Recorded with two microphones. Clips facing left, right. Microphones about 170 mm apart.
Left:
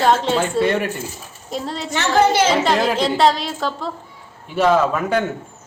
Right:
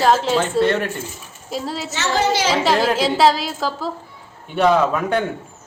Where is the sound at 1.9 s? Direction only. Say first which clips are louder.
Left 4 dB; 55° left (ahead or behind).